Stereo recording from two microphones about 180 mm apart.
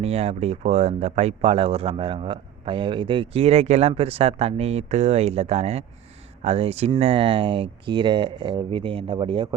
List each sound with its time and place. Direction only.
0.0 s speech: 35° right (ahead or behind)